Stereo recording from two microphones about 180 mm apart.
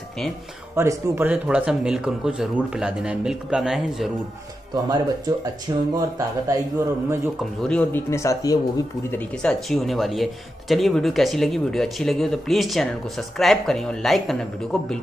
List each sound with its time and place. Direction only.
0.7 s speech: 15° right (ahead or behind)
4.8 s speech: 20° right (ahead or behind)
7.6 s speech: 5° left (ahead or behind)
9.1 s speech: 5° left (ahead or behind)